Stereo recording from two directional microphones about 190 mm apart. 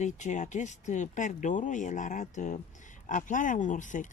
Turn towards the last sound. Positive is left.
turn(degrees=40)  # may be behind; listen again after turning